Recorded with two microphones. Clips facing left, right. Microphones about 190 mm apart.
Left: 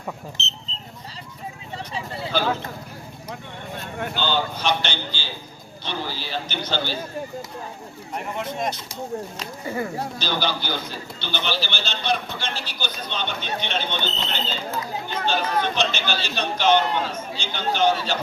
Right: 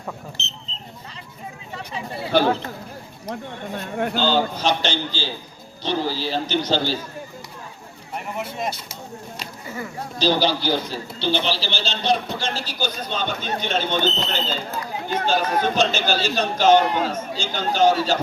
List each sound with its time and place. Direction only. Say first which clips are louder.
0.4 s speech: left 1 dB; 20° right (ahead or behind)
2.4 s speech: right 4 dB; 35° right (ahead or behind)
3.9 s speech: right 5 dB; 45° right (ahead or behind)
8.1 s speech: left 1 dB; 5° right (ahead or behind)
10.2 s speech: right 9 dB; 35° right (ahead or behind)